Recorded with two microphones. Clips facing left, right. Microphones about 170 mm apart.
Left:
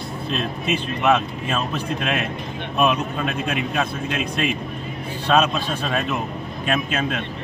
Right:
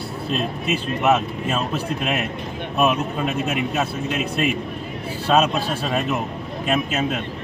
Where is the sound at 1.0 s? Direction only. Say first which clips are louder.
Even; 5° right (ahead or behind).